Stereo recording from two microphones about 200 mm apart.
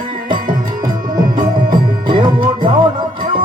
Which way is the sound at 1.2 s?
20° right (ahead or behind).